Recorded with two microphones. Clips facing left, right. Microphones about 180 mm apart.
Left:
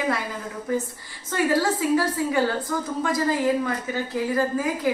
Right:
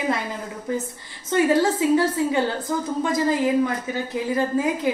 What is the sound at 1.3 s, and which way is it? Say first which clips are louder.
A woman's voice: right 3 dB; 20° right (ahead or behind).